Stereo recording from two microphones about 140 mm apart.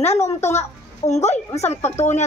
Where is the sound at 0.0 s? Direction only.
50° left (ahead or behind).